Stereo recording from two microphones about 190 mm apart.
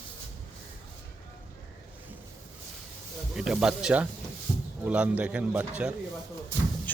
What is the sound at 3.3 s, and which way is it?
Speech, centre (ahead or behind).